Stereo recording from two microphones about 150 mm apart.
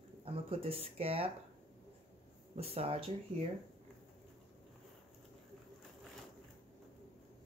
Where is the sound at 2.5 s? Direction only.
40° right (ahead or behind).